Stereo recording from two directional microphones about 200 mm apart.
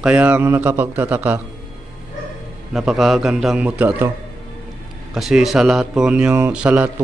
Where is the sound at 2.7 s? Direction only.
Centre (ahead or behind).